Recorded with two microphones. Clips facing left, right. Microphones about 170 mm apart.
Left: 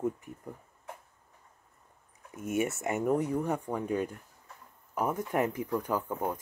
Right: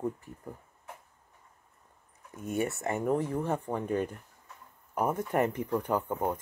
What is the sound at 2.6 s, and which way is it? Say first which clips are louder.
Speech: right 2 dB; centre (ahead or behind).